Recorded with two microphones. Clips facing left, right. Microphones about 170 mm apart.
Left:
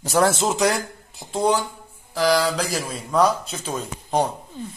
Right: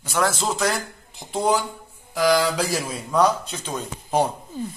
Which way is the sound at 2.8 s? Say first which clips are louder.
Left 1 dB; centre (ahead or behind).